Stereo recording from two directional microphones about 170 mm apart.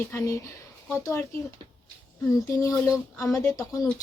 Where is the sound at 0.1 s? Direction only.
15° left (ahead or behind).